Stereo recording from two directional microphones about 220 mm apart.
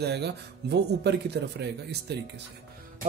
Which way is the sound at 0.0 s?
50° right (ahead or behind).